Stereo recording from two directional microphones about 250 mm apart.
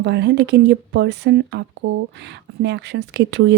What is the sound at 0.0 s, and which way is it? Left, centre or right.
Speech, right.